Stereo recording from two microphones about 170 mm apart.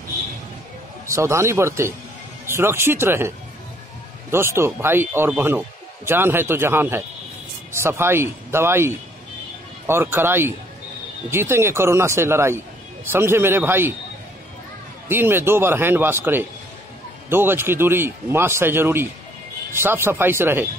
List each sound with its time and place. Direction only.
1.0 s a man's voice: 15° right (ahead or behind)
15.0 s a man's voice: 15° right (ahead or behind)